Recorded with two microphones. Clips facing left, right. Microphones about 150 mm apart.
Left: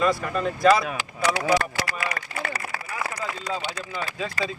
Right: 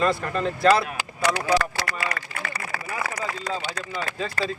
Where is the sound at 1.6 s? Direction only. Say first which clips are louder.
Right 1 dB; 40° left (ahead or behind).